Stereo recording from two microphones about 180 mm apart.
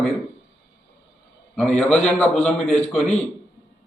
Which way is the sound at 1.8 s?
Centre (ahead or behind).